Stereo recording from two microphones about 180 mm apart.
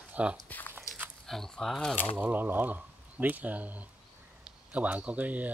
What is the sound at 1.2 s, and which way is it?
Speech, centre (ahead or behind).